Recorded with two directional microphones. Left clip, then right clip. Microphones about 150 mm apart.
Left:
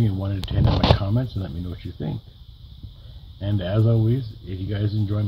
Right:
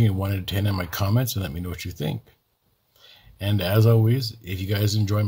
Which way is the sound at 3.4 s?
55° right (ahead or behind).